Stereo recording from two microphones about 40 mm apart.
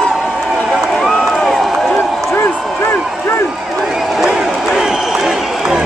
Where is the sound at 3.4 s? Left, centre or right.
Centre.